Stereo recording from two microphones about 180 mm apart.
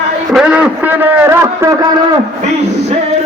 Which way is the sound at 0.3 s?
5° right (ahead or behind).